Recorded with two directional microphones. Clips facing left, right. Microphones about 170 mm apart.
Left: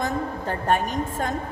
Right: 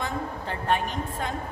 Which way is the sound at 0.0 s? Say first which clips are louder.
Left 5 dB; 45° left (ahead or behind).